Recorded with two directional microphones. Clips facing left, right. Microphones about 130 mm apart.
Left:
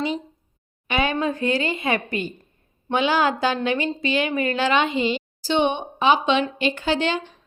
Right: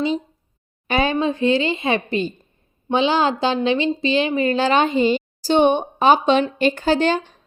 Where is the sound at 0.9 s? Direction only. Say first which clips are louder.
Right 3 dB; 35° right (ahead or behind).